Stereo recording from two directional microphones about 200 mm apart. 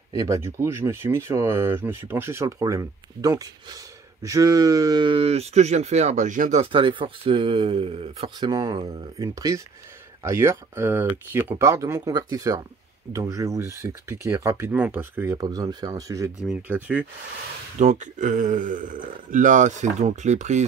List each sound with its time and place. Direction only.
0.1 s speech: 15° right (ahead or behind); by 6.6 s 40° right (ahead or behind)
6.6 s speech: 25° right (ahead or behind); by 17.0 s 10° right (ahead or behind)
17.7 s speech: 35° right (ahead or behind)